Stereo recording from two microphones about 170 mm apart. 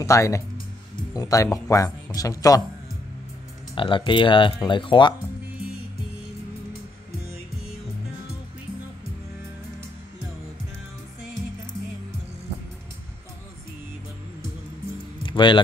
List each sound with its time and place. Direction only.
0.0 s speech: 15° left (ahead or behind)
3.7 s speech: 30° left (ahead or behind)
15.2 s keys jangling: 30° left (ahead or behind)